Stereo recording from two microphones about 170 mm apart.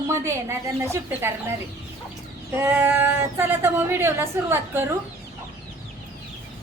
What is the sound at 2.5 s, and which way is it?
A woman's voice, 10° right (ahead or behind).